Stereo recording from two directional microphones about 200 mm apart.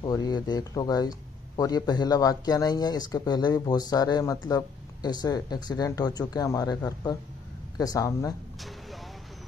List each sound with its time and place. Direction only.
0.0 s speech: 20° left (ahead or behind)
8.5 s vehicle: centre (ahead or behind)